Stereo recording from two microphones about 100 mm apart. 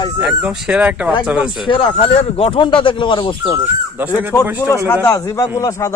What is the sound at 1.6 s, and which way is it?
Speech, 60° left (ahead or behind).